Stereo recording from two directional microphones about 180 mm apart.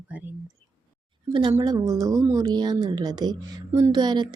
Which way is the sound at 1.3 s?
25° right (ahead or behind).